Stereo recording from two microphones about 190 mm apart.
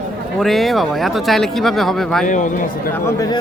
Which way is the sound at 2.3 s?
40° left (ahead or behind).